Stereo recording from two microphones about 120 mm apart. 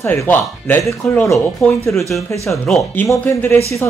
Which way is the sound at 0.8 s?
5° left (ahead or behind).